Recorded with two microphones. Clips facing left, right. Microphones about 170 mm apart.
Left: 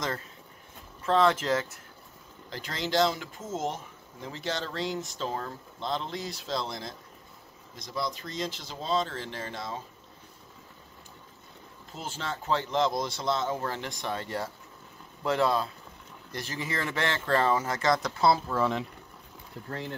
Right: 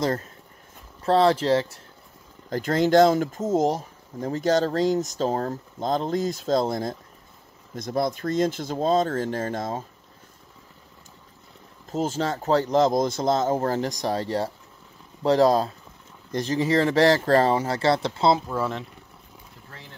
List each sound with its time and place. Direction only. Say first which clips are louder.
0.0 s speech: right 8 dB; 40° right (ahead or behind)
2.5 s speech: right 11 dB; 50° right (ahead or behind)
11.9 s speech: right 11 dB; 40° right (ahead or behind); by 18.4 s 25° right (ahead or behind)
18.5 s speech: right 1 dB; 5° right (ahead or behind)